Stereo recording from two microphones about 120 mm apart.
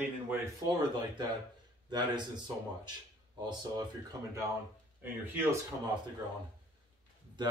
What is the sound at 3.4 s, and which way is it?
Speech, 35° right (ahead or behind).